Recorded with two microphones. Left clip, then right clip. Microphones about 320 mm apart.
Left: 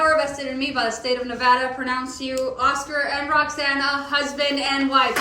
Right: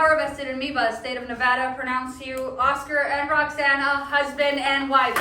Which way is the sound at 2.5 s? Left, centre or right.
Centre.